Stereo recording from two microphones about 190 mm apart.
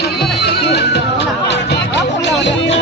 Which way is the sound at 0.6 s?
60° left (ahead or behind).